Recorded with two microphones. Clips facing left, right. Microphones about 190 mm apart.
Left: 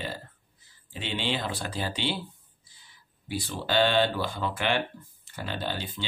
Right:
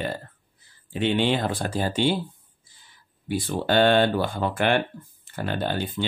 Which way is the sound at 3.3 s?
55° right (ahead or behind).